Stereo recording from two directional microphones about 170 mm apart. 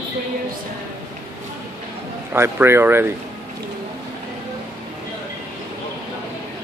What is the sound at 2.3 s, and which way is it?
Speech, 15° right (ahead or behind).